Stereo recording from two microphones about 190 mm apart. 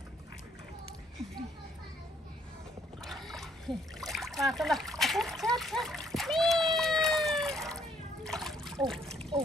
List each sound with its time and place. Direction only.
3.0 s splash: centre (ahead or behind)
9.3 s speech: 25° right (ahead or behind)